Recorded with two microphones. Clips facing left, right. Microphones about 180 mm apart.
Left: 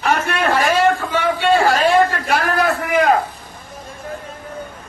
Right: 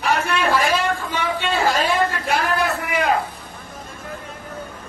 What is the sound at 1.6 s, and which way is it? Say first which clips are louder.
A man's voice: left 5 dB; 60° left (ahead or behind).